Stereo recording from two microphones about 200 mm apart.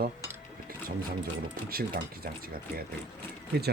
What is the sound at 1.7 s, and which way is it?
Speech, 50° right (ahead or behind).